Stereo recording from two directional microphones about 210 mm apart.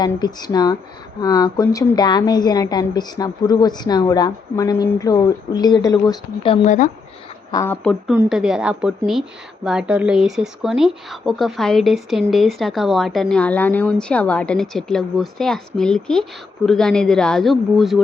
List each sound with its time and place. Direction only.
0.0 s a woman's voice: 20° left (ahead or behind)
7.5 s speech: 15° left (ahead or behind)
8.1 s speech: 5° right (ahead or behind)